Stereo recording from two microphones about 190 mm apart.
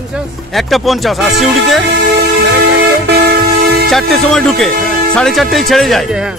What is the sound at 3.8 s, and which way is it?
Speech, centre (ahead or behind).